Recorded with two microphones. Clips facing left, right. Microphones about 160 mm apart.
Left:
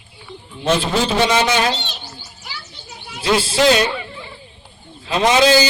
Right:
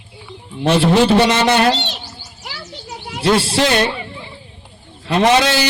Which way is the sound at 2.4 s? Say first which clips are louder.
Right 7 dB; 75° right (ahead or behind).